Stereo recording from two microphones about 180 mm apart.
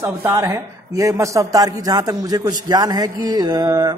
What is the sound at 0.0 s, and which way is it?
A man's voice, 15° right (ahead or behind).